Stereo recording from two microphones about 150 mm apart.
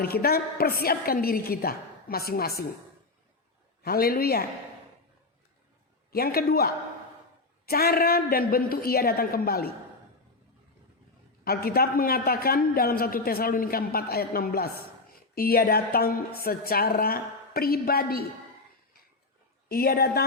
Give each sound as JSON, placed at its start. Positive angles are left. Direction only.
{"t": 0.0, "sound": "a woman's voice", "side_deg": 90}
{"t": 3.8, "sound": "a woman's voice", "side_deg": 90}
{"t": 6.1, "sound": "a man's voice", "side_deg": 85}
{"t": 11.4, "sound": "a man's voice", "side_deg": 90}
{"t": 19.6, "sound": "a man's voice", "side_deg": 90}